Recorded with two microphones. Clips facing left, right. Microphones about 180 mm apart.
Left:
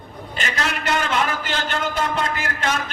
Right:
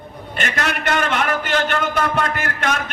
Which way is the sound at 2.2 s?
60° right (ahead or behind).